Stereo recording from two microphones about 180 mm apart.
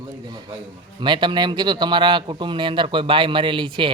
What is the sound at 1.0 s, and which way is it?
A man's voice, 25° right (ahead or behind).